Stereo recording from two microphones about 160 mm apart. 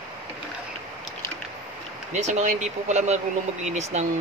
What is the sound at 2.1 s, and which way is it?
Speech, 45° right (ahead or behind).